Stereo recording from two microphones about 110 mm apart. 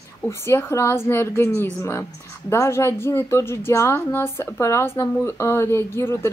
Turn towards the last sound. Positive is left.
turn(degrees=25)  # may be behind; listen again after turning